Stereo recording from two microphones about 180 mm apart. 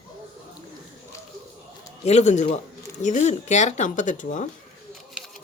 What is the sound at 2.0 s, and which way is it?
Speech, 40° left (ahead or behind).